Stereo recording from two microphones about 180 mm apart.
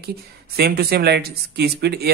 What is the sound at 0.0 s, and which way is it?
Speech, 60° right (ahead or behind).